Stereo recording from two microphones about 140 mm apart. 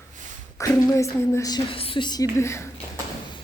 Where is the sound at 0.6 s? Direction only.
20° left (ahead or behind).